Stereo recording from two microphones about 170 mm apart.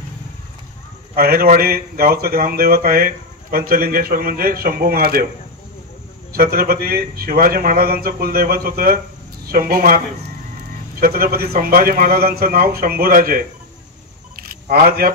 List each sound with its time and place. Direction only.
1.1 s speech: 65° right (ahead or behind)
6.3 s speech: 65° right (ahead or behind)
14.3 s single-lens reflex camera: 60° right (ahead or behind)